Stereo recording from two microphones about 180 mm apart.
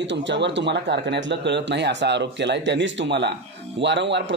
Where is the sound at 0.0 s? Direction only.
80° right.